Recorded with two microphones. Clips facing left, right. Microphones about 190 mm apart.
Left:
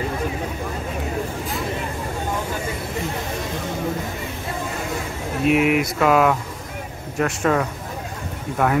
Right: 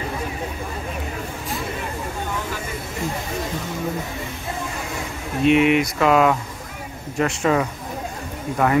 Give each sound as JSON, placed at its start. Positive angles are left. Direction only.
{"t": 5.4, "sound": "speech", "side_deg": 5}